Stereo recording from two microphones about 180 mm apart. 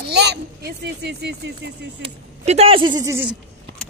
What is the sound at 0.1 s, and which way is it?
Speech, 65° right (ahead or behind).